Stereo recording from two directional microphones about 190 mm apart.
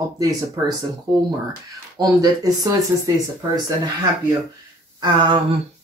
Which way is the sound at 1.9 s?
20° right (ahead or behind).